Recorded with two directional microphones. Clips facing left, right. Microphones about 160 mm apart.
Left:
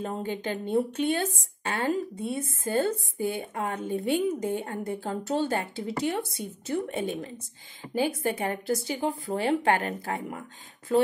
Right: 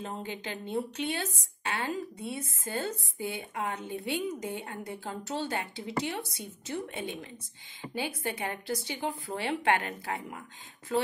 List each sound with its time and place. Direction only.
0.0 s speech: 50° left (ahead or behind)
2.3 s speech: 55° left (ahead or behind)
7.1 s speech: 35° left (ahead or behind)